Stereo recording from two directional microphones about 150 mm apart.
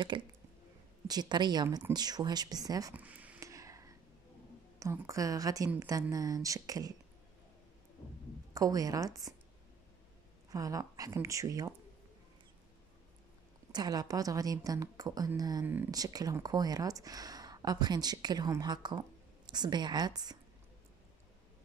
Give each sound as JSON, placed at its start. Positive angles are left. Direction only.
{"t": 0.0, "sound": "speech", "side_deg": -30}
{"t": 2.9, "sound": "a sound", "side_deg": -10}
{"t": 3.3, "sound": "a sound", "side_deg": -20}
{"t": 4.7, "sound": "speech", "side_deg": -20}
{"t": 8.5, "sound": "speech", "side_deg": -25}
{"t": 10.5, "sound": "speech", "side_deg": -25}
{"t": 13.7, "sound": "speech", "side_deg": -30}
{"t": 15.6, "sound": "speech", "side_deg": -15}
{"t": 15.9, "sound": "speech", "side_deg": -25}